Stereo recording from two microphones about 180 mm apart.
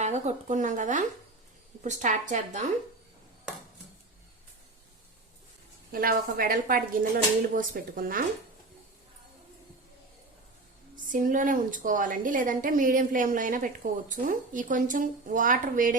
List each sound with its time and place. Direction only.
0.0 s a woman's voice: 40° right (ahead or behind)
5.9 s a woman's voice: 55° right (ahead or behind)
10.9 s a woman's voice: 50° right (ahead or behind)